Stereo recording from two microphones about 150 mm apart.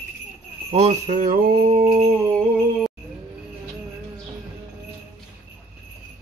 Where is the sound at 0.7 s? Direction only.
55° right (ahead or behind).